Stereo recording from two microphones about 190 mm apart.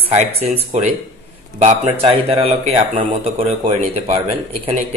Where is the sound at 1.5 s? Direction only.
35° right (ahead or behind).